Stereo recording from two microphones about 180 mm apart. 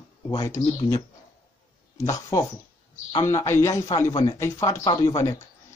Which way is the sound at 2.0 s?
20° left (ahead or behind).